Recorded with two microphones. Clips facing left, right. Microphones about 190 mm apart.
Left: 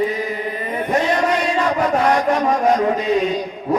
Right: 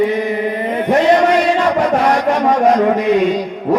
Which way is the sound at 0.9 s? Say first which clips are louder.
Right 7 dB; 75° right (ahead or behind).